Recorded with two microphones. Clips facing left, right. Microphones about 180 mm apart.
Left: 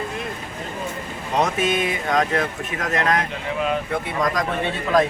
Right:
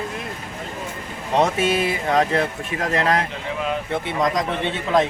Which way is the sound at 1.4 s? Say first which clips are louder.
Right 2 dB; 30° right (ahead or behind).